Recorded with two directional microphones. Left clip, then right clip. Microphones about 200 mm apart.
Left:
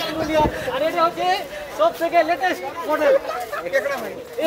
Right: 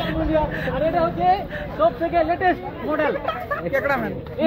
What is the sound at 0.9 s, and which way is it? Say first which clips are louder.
Speech: right 1 dB; 35° left (ahead or behind).